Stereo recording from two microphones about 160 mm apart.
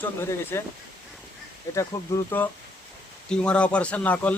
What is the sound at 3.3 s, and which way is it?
Speech, 5° left (ahead or behind).